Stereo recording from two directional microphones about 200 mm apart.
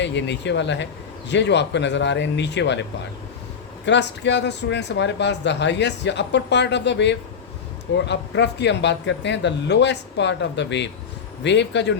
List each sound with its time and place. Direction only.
0.0 s speech: 60° left (ahead or behind)
3.8 s speech: 60° left (ahead or behind)